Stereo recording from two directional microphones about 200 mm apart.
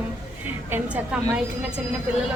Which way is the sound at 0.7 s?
5° right (ahead or behind).